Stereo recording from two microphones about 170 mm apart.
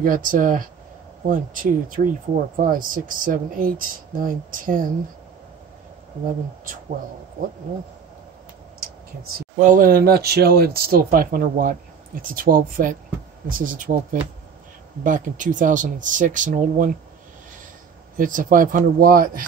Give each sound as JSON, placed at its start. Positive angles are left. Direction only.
{"t": 0.0, "sound": "speech", "side_deg": -55}
{"t": 6.2, "sound": "speech", "side_deg": -50}
{"t": 9.2, "sound": "speech", "side_deg": -50}
{"t": 15.0, "sound": "speech", "side_deg": -50}
{"t": 18.1, "sound": "speech", "side_deg": -55}